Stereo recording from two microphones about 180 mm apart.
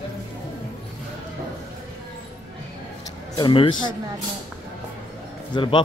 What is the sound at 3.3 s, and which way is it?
Speech, 25° left (ahead or behind).